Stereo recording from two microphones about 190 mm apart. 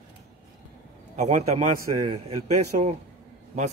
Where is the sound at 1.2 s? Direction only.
35° right (ahead or behind).